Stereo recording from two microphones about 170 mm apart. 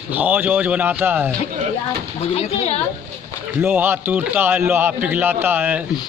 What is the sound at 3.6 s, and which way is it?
A man's voice, 15° right (ahead or behind).